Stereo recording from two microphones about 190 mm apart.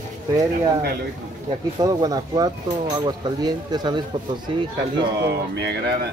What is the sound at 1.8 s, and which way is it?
Speech, 20° right (ahead or behind).